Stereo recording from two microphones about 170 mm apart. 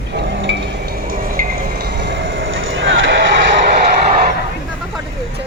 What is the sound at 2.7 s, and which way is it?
Vehicle, 90° right.